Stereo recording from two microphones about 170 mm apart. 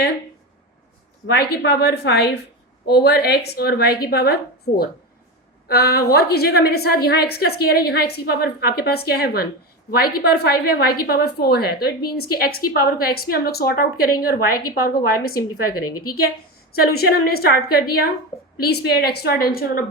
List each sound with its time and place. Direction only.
1.3 s a woman's voice: 70° left (ahead or behind)
16.8 s a woman's voice: 65° left (ahead or behind)